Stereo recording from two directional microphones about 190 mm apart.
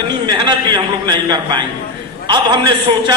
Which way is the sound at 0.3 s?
25° right (ahead or behind).